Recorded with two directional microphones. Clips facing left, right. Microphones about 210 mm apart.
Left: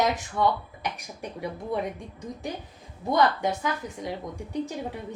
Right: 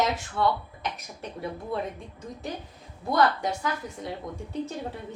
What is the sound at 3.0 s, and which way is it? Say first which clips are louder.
Speech: left 1 dB; 20° left (ahead or behind).